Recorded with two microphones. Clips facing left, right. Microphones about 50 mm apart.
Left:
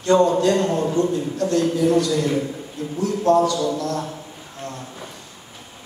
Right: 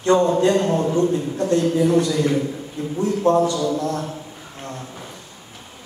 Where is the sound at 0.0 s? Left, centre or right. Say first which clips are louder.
Even; right.